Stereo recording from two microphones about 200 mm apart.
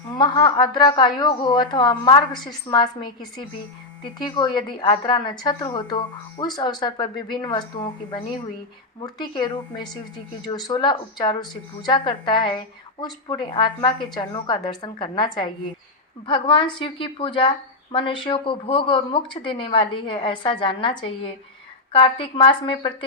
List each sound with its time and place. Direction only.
0.1 s speech: 20° left (ahead or behind)
21.9 s speech: 25° left (ahead or behind)